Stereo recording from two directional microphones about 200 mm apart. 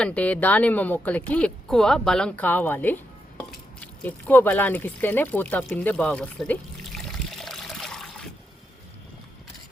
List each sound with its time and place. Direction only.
0.0 s speech: 5° left (ahead or behind)
7.3 s trickle: centre (ahead or behind)